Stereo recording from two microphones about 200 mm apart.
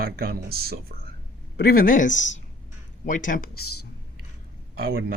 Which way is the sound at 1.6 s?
45° left (ahead or behind).